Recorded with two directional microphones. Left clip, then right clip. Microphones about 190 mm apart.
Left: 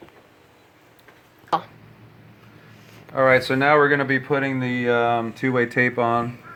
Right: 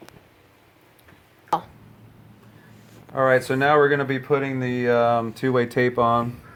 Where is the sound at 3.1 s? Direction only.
30° right (ahead or behind).